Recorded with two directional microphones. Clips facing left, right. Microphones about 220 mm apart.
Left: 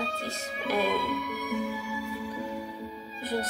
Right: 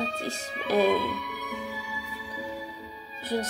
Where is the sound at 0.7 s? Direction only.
45° right (ahead or behind).